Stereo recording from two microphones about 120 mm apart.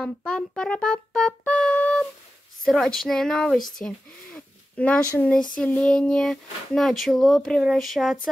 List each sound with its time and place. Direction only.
0.0 s speech: 5° left (ahead or behind)